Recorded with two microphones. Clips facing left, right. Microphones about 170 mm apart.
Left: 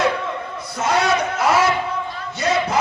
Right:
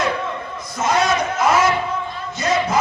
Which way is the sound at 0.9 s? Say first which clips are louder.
Even; 65° left (ahead or behind).